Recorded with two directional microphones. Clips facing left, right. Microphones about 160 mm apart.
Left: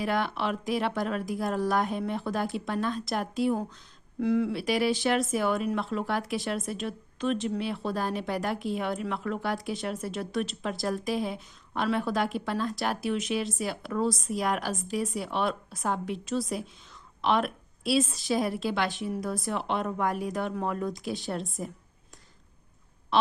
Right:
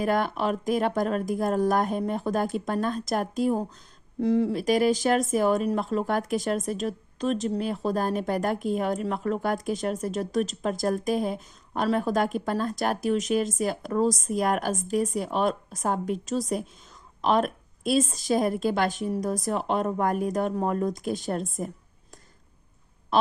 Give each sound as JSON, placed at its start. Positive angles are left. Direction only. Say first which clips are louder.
{"t": 0.0, "sound": "speech", "louder": "right 4 dB", "side_deg": -45}